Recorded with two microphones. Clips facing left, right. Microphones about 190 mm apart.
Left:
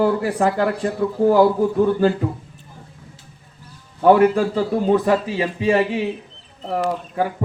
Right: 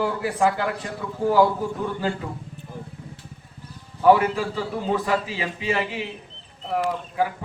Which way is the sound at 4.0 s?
50° left (ahead or behind).